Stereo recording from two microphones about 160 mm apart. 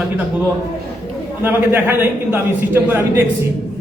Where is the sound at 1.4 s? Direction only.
10° right (ahead or behind).